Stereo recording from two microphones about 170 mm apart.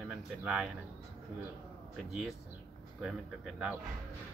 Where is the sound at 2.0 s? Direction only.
Centre (ahead or behind).